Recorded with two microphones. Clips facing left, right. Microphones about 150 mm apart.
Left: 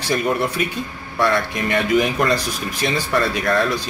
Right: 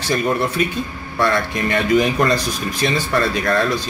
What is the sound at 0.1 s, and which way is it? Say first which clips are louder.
Speech: right 1 dB; 10° left (ahead or behind).